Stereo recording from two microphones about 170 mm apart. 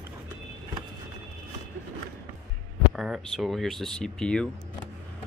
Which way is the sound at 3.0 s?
Centre (ahead or behind).